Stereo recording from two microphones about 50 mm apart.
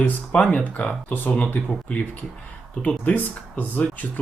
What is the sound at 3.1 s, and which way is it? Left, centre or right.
Speech, left.